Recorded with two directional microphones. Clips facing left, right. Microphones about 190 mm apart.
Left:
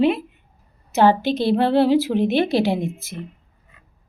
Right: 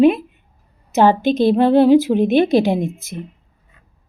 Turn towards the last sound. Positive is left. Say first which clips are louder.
# right 3 dB
turn(degrees=-15)  # may be behind; listen again after turning